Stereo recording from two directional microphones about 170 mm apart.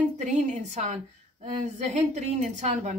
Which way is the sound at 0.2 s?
45° right (ahead or behind).